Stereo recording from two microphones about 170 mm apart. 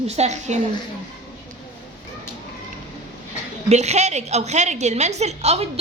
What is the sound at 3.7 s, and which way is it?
A woman's voice, 40° right (ahead or behind).